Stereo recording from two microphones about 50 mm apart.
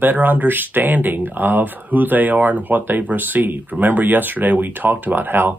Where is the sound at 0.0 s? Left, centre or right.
Right.